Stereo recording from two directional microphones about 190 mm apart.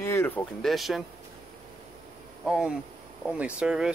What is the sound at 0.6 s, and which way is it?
Speech, centre (ahead or behind).